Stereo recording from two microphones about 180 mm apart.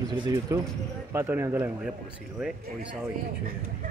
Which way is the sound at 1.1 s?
15° right (ahead or behind).